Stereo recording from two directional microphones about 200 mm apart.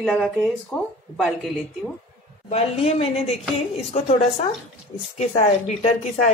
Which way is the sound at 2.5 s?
30° left (ahead or behind).